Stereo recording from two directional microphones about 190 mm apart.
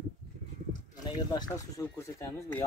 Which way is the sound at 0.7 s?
20° left (ahead or behind).